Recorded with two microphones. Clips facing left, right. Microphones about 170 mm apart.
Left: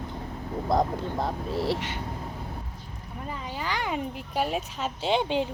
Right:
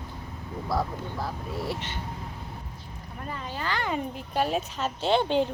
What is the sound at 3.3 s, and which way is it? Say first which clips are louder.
Speech: even; 10° left (ahead or behind).